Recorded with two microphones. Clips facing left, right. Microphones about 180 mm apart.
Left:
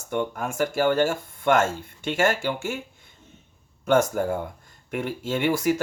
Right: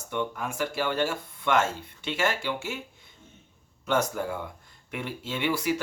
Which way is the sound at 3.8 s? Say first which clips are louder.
Left 6 dB; 50° left (ahead or behind).